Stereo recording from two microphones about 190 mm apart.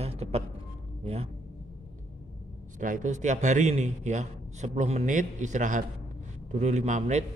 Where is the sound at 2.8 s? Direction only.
40° right (ahead or behind).